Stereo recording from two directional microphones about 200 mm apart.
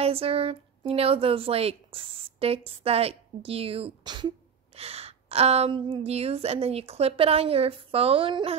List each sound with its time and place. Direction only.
0.0 s a woman's voice: 30° right (ahead or behind)